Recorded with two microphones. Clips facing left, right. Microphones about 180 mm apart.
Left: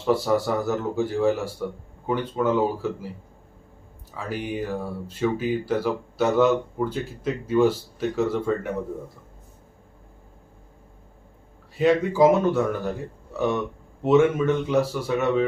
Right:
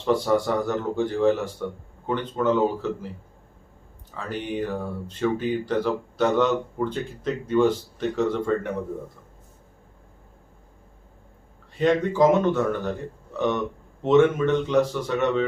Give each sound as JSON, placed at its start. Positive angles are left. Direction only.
{"t": 0.0, "sound": "speech", "side_deg": 5}
{"t": 4.1, "sound": "speech", "side_deg": 5}
{"t": 11.8, "sound": "speech", "side_deg": 5}